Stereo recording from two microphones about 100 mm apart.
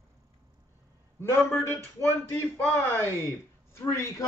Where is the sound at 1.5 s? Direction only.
25° left (ahead or behind).